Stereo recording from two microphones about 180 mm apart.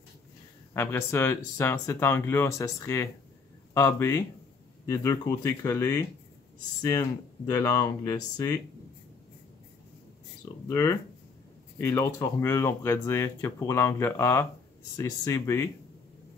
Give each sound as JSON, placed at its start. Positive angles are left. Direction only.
{"t": 0.7, "sound": "speech", "side_deg": 15}
{"t": 10.7, "sound": "speech", "side_deg": 20}